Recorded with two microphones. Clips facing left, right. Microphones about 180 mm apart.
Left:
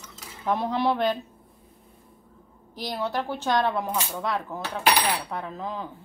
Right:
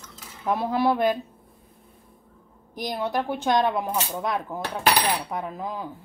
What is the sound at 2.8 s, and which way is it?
Speech, 15° right (ahead or behind).